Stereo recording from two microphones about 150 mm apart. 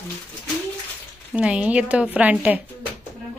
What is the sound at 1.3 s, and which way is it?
A woman's voice, 10° right (ahead or behind).